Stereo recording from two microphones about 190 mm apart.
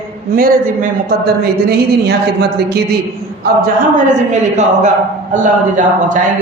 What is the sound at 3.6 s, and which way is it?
Speech, 40° right (ahead or behind).